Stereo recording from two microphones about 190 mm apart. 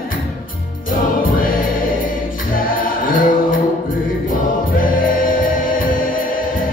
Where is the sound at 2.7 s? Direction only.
45° left (ahead or behind).